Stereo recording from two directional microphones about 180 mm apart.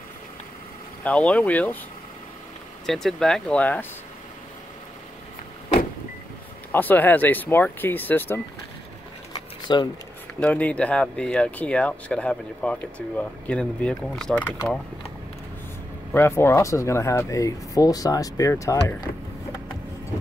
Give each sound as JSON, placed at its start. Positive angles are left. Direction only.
{"t": 1.0, "sound": "speech", "side_deg": 5}
{"t": 2.9, "sound": "speech", "side_deg": 0}
{"t": 6.7, "sound": "speech", "side_deg": 10}
{"t": 9.3, "sound": "a sound", "side_deg": 25}
{"t": 10.4, "sound": "speech", "side_deg": 10}
{"t": 16.1, "sound": "speech", "side_deg": 15}